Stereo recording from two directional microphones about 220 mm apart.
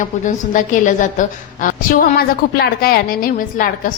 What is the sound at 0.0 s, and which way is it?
A woman's voice, 35° left (ahead or behind).